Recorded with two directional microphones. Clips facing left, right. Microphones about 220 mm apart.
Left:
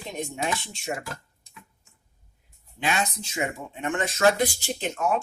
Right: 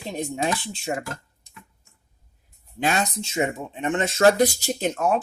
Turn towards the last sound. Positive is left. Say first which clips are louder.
# right 4 dB
turn(degrees=-35)  # may be behind; listen again after turning